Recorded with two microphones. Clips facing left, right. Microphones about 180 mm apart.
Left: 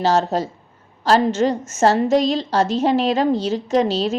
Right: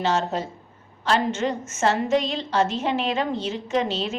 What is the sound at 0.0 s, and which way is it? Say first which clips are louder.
A woman's voice: left 5 dB; 40° left (ahead or behind).